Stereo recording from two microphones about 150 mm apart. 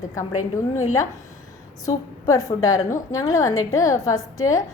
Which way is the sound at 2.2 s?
20° left (ahead or behind).